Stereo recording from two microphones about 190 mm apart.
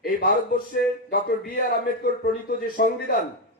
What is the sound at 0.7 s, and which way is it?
Speech, 50° left (ahead or behind).